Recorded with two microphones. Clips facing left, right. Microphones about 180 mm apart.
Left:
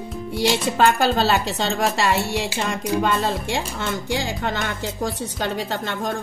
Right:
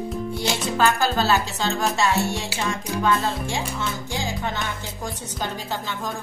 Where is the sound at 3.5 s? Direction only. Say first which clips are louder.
Left 2 dB; 65° left (ahead or behind).